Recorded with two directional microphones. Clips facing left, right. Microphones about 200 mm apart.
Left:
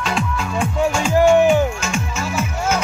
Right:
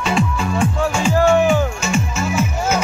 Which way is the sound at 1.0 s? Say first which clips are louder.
Left 1 dB; 10° left (ahead or behind).